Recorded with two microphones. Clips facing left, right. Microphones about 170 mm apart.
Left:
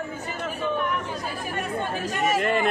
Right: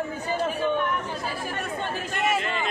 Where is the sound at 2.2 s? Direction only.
45° left (ahead or behind).